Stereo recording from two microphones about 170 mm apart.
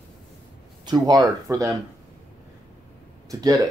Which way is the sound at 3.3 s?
20° right (ahead or behind).